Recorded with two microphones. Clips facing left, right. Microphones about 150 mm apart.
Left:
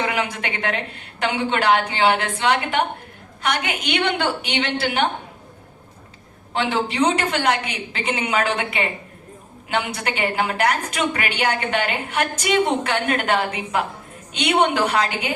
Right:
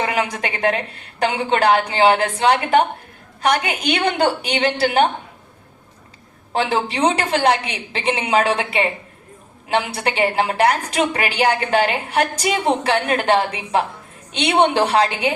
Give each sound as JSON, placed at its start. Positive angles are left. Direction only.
{"t": 0.1, "sound": "a woman's voice", "side_deg": -35}
{"t": 6.5, "sound": "a woman's voice", "side_deg": -35}